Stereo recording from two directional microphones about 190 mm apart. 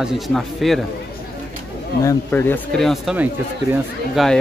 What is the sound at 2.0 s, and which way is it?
Speech, 15° left (ahead or behind).